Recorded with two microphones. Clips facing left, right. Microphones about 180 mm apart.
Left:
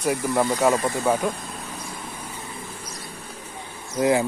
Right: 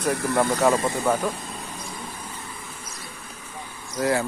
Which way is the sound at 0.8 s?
20° right (ahead or behind).